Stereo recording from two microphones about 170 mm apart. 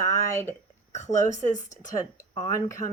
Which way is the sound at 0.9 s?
45° left (ahead or behind).